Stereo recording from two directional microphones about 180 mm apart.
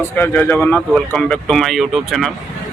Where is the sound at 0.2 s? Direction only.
10° left (ahead or behind).